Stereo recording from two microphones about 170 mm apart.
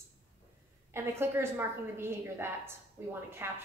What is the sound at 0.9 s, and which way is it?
A woman's voice, 15° right (ahead or behind).